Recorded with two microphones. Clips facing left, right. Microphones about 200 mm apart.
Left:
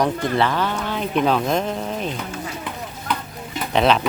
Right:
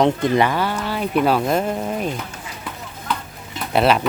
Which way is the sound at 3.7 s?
5° right (ahead or behind).